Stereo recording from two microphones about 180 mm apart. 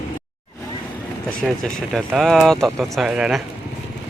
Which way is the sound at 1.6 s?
Centre (ahead or behind).